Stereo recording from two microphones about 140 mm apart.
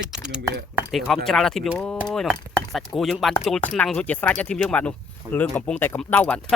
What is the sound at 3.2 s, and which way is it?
Speech, centre (ahead or behind).